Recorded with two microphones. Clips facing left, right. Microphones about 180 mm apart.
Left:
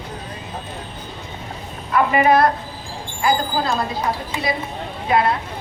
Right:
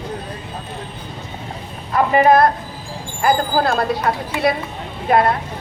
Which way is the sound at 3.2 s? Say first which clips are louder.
Right 3 dB; 55° right (ahead or behind).